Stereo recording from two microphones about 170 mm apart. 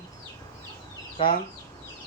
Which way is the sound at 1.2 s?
30° left (ahead or behind).